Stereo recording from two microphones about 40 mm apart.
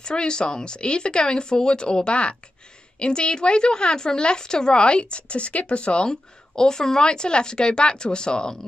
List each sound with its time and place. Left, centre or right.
0.0 s a woman's voice: left